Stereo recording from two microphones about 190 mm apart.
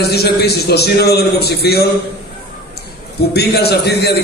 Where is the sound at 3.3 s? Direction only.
55° left (ahead or behind).